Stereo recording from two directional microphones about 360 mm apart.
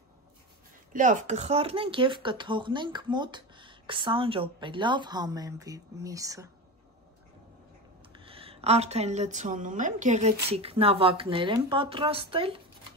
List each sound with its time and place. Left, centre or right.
0.9 s speech: right
8.1 s speech: centre